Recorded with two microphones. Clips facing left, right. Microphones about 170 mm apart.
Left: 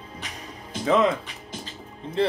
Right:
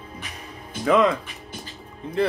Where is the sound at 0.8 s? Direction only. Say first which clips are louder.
Right 2 dB; 25° left (ahead or behind).